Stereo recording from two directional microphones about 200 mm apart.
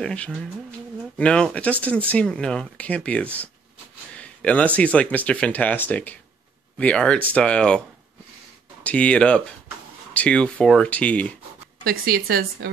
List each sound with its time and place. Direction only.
0.0 s speech: 5° left (ahead or behind)
8.8 s speech: 5° left (ahead or behind)
11.8 s speech: 50° right (ahead or behind)